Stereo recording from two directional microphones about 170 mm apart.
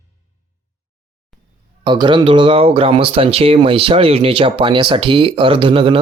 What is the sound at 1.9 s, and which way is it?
Speech, 25° right (ahead or behind).